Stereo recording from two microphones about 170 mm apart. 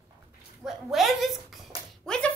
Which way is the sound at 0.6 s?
Centre (ahead or behind).